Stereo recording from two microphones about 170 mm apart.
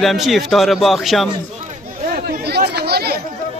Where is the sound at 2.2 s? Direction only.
70° right (ahead or behind).